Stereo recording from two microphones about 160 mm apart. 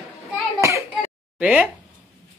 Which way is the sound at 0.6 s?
20° right (ahead or behind).